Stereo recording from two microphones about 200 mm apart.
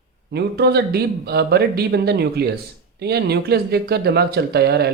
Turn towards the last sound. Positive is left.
turn(degrees=-55)  # may be behind; listen again after turning